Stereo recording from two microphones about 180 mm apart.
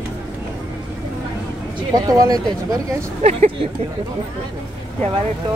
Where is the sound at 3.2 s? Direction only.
35° right (ahead or behind).